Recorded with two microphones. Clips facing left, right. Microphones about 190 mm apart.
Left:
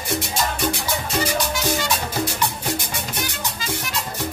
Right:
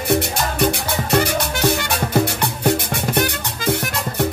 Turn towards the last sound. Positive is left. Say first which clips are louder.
# right 6 dB
turn(degrees=-60)  # may be behind; listen again after turning